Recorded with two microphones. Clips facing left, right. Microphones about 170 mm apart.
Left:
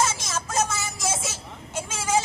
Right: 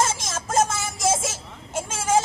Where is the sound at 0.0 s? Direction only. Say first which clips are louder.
Right 1 dB; 50° right (ahead or behind).